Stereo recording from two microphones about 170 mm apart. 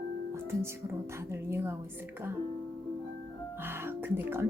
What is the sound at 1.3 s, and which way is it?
Speech, 15° right (ahead or behind).